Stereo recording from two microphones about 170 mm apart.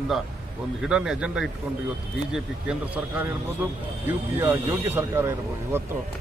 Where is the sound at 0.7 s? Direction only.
5° right (ahead or behind).